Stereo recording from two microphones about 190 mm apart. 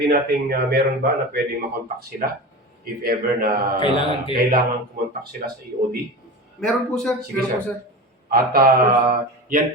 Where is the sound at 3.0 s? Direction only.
50° right (ahead or behind).